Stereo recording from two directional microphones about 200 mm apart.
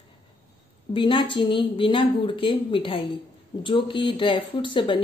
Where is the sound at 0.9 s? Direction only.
25° left (ahead or behind).